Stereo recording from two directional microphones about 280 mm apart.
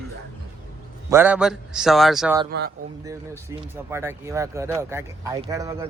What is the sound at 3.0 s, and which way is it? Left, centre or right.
Speech, centre.